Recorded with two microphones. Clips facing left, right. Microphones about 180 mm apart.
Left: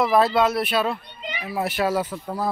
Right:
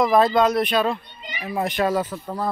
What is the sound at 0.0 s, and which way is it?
Speech, 5° left (ahead or behind).